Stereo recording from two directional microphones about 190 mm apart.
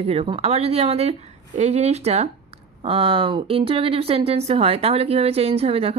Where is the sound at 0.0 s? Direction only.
30° right (ahead or behind).